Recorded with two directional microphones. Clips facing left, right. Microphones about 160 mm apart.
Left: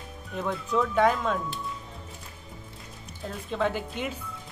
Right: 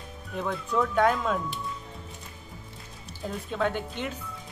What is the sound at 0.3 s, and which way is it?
Speech, centre (ahead or behind).